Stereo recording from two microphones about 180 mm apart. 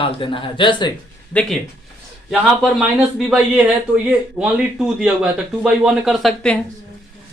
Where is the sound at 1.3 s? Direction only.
10° left (ahead or behind).